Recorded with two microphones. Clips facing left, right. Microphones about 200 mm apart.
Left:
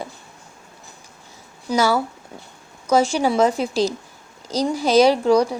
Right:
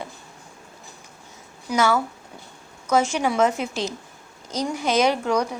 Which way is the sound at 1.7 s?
35° left (ahead or behind).